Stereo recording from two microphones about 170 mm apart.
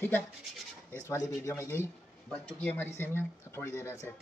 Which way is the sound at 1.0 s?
20° left (ahead or behind).